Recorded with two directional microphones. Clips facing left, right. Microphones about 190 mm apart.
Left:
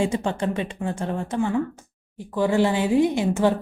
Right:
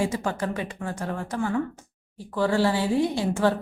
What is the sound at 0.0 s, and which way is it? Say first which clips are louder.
Speech: left 3 dB; 25° left (ahead or behind).